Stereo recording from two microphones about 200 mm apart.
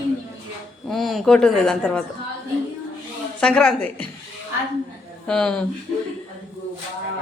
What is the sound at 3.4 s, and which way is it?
Speech, 5° left (ahead or behind).